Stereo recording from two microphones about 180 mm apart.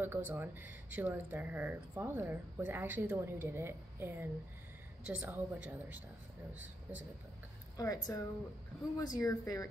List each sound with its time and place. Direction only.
0.0 s speech: 10° right (ahead or behind)
7.7 s a woman's voice: 20° left (ahead or behind)